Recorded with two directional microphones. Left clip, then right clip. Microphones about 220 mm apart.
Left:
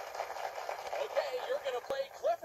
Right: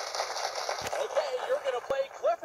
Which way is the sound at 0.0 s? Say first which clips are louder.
Right 6 dB; 40° right (ahead or behind).